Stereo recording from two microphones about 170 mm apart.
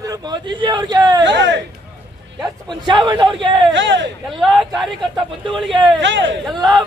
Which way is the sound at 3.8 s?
90° right.